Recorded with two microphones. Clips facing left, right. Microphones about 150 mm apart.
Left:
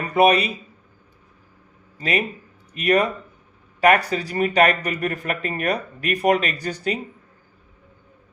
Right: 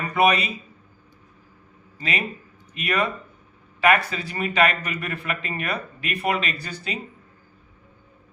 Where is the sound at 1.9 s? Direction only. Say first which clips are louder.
Left 5 dB; 45° left (ahead or behind).